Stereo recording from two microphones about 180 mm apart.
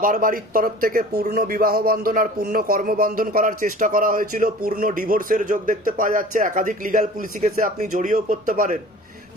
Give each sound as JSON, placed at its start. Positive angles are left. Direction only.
{"t": 0.0, "sound": "speech", "side_deg": -50}